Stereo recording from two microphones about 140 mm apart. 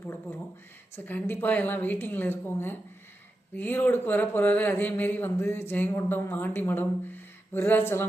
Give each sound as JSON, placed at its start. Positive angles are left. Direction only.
{"t": 0.9, "sound": "speech", "side_deg": 15}